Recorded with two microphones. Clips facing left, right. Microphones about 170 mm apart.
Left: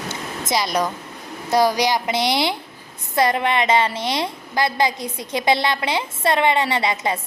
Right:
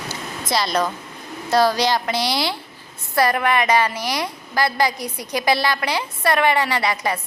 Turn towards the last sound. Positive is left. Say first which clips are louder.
# even
turn(degrees=20)  # may be behind; listen again after turning